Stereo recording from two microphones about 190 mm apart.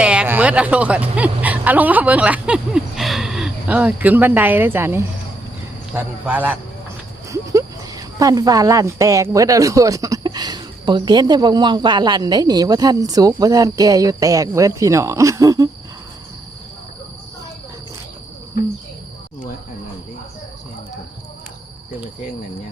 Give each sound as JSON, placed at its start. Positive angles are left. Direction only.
{"t": 0.0, "sound": "speech", "side_deg": -5}